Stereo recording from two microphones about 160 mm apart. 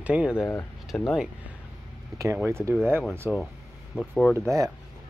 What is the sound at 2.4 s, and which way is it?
Speech, 15° right (ahead or behind).